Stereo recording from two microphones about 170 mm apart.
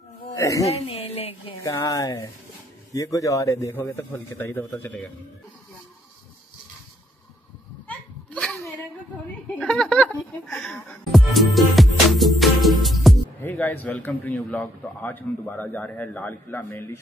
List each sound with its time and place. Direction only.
0.3 s speech: 20° left (ahead or behind)
0.7 s speech: 35° left (ahead or behind)
1.6 s a man's voice: 20° left (ahead or behind)
7.9 s a sound: 5° left (ahead or behind)
9.6 s speech: 5° left (ahead or behind)
13.4 s a man's voice: 10° left (ahead or behind)